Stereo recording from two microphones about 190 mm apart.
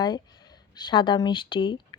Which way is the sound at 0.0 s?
20° left (ahead or behind).